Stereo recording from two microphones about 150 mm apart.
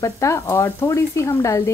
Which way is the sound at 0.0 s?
20° left (ahead or behind).